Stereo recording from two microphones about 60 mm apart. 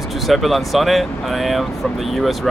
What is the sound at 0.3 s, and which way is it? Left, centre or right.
Speech, centre.